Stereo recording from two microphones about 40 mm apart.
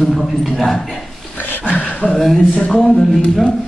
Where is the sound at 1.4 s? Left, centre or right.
Left.